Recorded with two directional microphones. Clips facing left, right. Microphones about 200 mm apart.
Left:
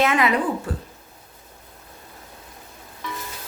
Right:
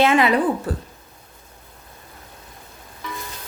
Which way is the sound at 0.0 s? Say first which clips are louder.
Right 3 dB; 30° right (ahead or behind).